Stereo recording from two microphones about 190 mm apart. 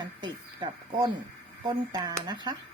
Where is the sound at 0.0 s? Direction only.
25° right (ahead or behind).